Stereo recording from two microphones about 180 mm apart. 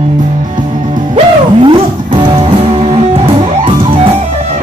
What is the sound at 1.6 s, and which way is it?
Music, 25° right (ahead or behind).